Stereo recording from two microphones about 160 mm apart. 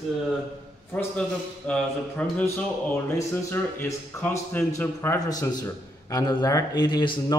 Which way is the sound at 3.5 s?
15° left (ahead or behind).